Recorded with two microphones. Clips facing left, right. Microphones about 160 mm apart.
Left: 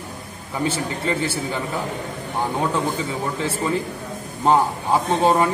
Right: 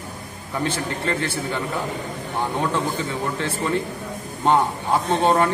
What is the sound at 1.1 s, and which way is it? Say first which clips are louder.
Speech: left 2 dB; 5° left (ahead or behind).